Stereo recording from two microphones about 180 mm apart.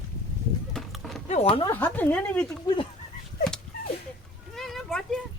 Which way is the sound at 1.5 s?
30° left (ahead or behind).